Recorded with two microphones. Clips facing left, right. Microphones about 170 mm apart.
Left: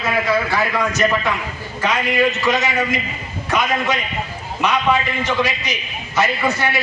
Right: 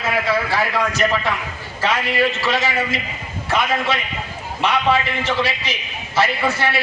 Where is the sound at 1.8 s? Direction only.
30° right (ahead or behind).